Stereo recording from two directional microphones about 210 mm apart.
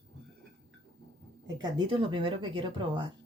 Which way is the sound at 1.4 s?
20° right (ahead or behind).